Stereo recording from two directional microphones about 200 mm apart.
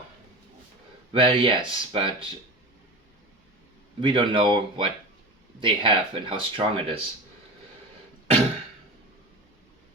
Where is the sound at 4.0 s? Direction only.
25° right (ahead or behind).